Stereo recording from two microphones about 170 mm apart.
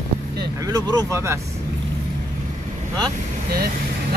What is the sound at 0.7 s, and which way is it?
Speech, 20° right (ahead or behind).